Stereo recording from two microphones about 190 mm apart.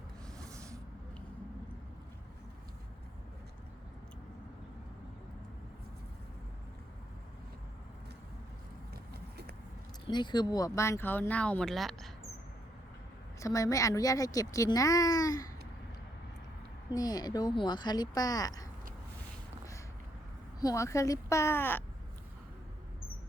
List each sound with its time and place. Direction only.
0.5 s a sound: 15° right (ahead or behind)
9.1 s vehicle: 55° right (ahead or behind)
10.1 s speech: 25° left (ahead or behind); by 12.1 s centre (ahead or behind)
13.4 s speech: 15° left (ahead or behind)
16.9 s speech: 20° left (ahead or behind)
20.6 s speech: 15° left (ahead or behind)